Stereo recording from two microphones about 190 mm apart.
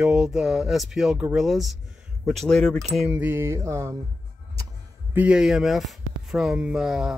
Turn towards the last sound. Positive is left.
turn(degrees=-5)  # may be behind; listen again after turning